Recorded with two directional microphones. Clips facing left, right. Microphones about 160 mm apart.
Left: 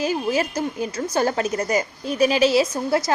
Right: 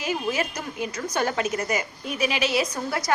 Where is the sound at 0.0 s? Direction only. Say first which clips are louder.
Left 5 dB; 35° left (ahead or behind).